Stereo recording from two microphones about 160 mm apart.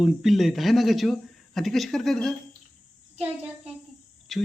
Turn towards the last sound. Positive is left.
turn(degrees=0)  # may be behind; listen again after turning